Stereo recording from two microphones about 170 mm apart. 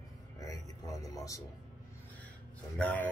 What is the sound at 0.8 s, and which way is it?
Speech, 20° left (ahead or behind).